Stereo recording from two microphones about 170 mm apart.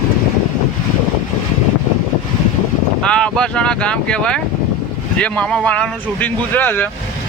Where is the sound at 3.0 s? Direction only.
5° left (ahead or behind).